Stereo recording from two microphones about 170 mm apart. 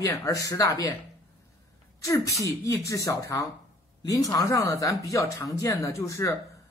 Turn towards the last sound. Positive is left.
turn(degrees=20)  # may be behind; listen again after turning